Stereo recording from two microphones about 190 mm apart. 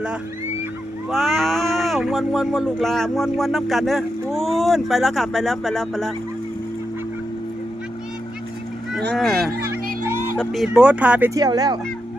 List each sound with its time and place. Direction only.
1.1 s speech: centre (ahead or behind)
9.1 s speech: centre (ahead or behind)
11.3 s speech: 20° right (ahead or behind)